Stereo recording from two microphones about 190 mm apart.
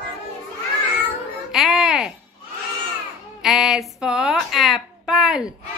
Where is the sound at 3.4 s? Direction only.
Centre (ahead or behind).